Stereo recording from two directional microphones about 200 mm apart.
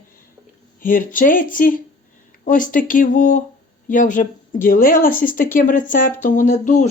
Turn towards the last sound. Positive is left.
turn(degrees=35)  # may be behind; listen again after turning